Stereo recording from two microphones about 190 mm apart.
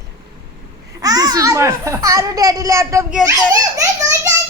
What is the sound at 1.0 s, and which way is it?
A child's voice, 20° right (ahead or behind).